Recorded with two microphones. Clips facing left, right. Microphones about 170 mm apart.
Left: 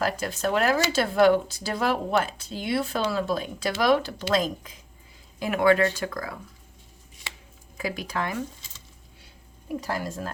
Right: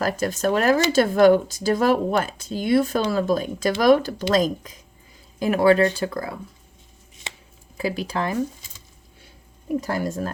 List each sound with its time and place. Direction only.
0.0 s speech: 45° right (ahead or behind)
7.3 s a sound: 20° right (ahead or behind)
7.8 s speech: 30° right (ahead or behind)
10.0 s speech: 45° right (ahead or behind)